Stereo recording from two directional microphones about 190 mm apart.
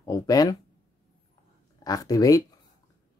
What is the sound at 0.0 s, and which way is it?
Speech, 20° left (ahead or behind).